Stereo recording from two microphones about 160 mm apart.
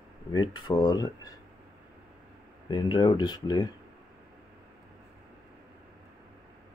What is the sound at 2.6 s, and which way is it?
Speech, 25° left (ahead or behind).